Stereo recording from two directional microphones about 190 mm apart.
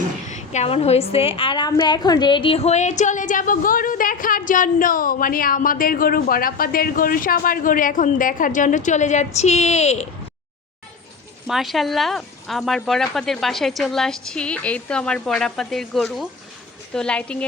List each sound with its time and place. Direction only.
0.3 s a woman's voice: 40° left (ahead or behind)
11.4 s speech: centre (ahead or behind)